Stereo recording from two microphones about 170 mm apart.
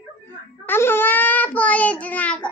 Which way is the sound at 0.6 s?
10° left (ahead or behind).